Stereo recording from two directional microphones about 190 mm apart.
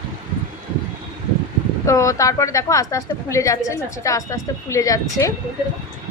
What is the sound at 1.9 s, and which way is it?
A woman's voice, 15° left (ahead or behind).